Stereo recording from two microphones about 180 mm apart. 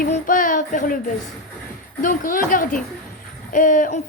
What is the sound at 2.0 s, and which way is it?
Speech, 50° left (ahead or behind).